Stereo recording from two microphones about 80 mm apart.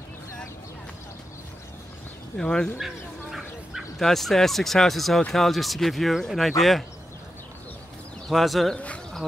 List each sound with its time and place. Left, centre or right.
2.3 s speech: centre
2.8 s speech: centre
8.3 s speech: centre
8.7 s speech: centre